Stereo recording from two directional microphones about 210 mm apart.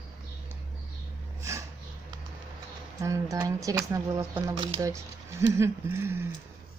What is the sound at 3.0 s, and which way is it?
Speech, 15° right (ahead or behind).